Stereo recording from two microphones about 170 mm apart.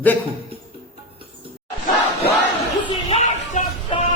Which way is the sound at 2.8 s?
30° left (ahead or behind).